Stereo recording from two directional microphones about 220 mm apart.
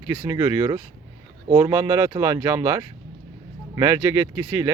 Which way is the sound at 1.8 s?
15° right (ahead or behind).